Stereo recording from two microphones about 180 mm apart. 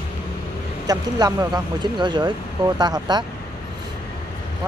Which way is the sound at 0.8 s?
20° right (ahead or behind).